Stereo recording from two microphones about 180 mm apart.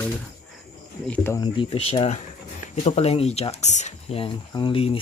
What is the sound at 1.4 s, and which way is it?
Speech, 30° left (ahead or behind).